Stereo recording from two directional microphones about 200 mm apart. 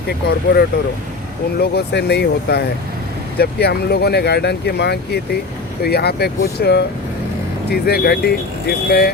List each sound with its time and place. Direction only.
0.1 s speech: 55° left (ahead or behind)